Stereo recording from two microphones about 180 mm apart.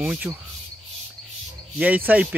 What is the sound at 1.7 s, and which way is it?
Speech, 10° right (ahead or behind).